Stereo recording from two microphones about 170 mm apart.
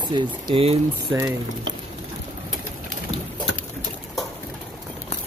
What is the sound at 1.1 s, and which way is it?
Speech, 10° right (ahead or behind).